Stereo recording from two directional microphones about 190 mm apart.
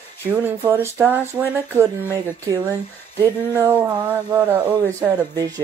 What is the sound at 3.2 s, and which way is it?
Speech, 10° right (ahead or behind).